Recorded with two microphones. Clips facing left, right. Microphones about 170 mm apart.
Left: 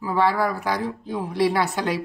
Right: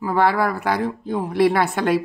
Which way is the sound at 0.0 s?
60° right (ahead or behind).